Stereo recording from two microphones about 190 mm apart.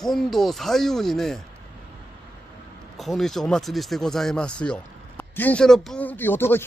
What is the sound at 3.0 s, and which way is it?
Speech, centre (ahead or behind).